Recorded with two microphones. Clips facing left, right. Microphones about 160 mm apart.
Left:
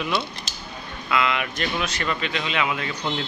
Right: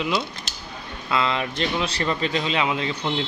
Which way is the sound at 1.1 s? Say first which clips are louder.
Even; 30° right (ahead or behind).